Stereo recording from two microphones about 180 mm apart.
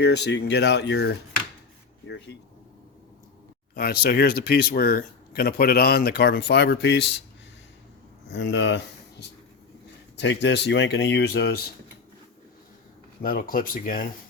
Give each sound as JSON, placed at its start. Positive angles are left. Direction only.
{"t": 0.0, "sound": "speech", "side_deg": 70}
{"t": 3.8, "sound": "speech", "side_deg": 60}
{"t": 8.3, "sound": "speech", "side_deg": 90}
{"t": 10.2, "sound": "speech", "side_deg": 80}
{"t": 13.2, "sound": "speech", "side_deg": 50}